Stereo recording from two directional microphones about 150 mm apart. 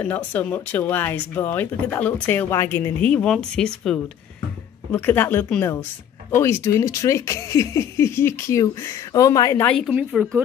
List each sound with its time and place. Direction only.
0.0 s speech: 10° left (ahead or behind)
9.7 s speech: centre (ahead or behind)